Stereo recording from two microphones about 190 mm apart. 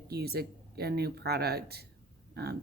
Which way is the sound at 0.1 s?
55° right (ahead or behind).